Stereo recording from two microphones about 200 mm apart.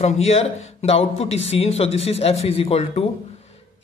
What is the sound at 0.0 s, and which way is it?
A woman's voice, 30° left (ahead or behind).